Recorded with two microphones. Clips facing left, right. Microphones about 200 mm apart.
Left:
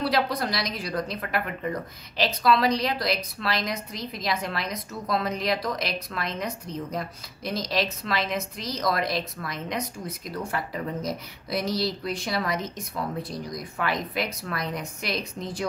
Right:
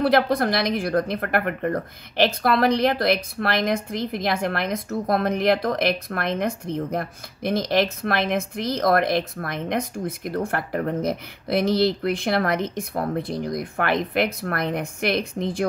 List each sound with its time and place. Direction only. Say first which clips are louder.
0.0 s a woman's voice: right 6 dB; 55° right (ahead or behind)